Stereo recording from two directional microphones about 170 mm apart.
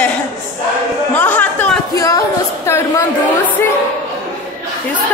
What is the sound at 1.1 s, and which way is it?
Chatter, 10° left (ahead or behind).